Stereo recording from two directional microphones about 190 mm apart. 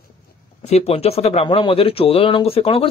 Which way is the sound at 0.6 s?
35° left (ahead or behind).